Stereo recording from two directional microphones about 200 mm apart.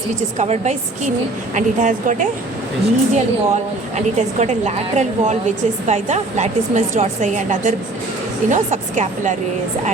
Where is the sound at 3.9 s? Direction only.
35° right (ahead or behind).